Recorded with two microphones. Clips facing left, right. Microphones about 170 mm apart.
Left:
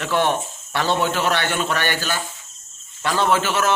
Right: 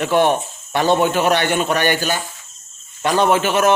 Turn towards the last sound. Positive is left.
turn(degrees=-15)  # may be behind; listen again after turning